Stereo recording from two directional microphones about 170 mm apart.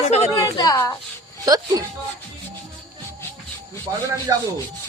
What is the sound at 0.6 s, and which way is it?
Speech, 20° left (ahead or behind).